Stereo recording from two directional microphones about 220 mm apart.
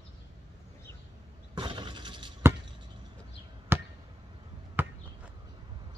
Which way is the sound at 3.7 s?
10° right (ahead or behind).